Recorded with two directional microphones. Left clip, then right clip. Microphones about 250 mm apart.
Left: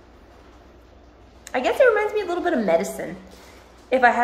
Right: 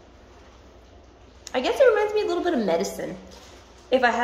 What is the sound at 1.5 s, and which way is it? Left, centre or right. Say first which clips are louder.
A woman's voice: left 1 dB; centre.